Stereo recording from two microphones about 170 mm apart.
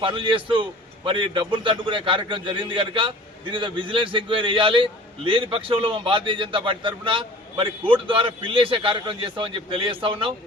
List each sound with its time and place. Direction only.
0.0 s a man's voice: 30° right (ahead or behind)